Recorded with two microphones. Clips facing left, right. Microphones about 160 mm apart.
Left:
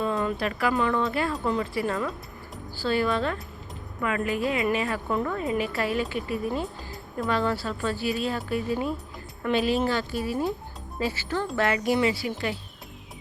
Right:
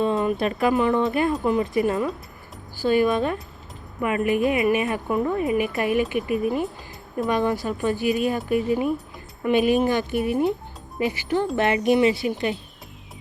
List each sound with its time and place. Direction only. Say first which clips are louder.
0.0 s a woman's voice: right 5 dB; 20° right (ahead or behind)